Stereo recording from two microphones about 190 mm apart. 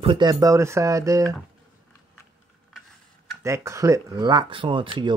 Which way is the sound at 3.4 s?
15° right (ahead or behind).